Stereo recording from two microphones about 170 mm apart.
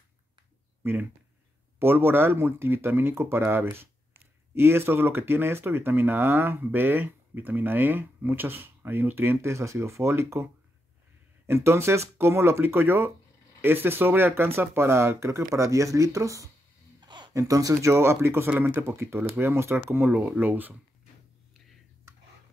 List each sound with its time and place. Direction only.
0.8 s speech: 15° right (ahead or behind)